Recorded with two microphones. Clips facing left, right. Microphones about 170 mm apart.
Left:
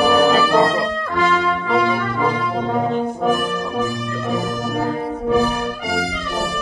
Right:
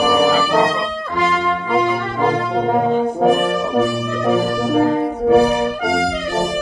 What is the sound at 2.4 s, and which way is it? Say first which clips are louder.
Brass instrument: right 3 dB; 65° right (ahead or behind).